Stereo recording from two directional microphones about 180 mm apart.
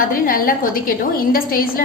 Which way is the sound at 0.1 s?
50° left (ahead or behind).